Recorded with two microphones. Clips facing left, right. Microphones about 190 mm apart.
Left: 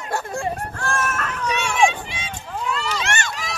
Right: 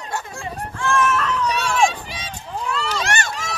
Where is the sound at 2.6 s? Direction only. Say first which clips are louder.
Even; centre (ahead or behind).